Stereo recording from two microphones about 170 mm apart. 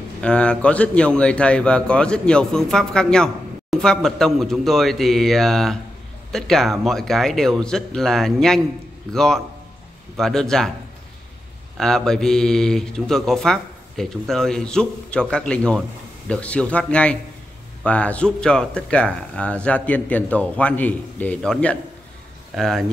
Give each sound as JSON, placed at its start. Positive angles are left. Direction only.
{"t": 0.2, "sound": "speech", "side_deg": 5}
{"t": 11.7, "sound": "speech", "side_deg": 0}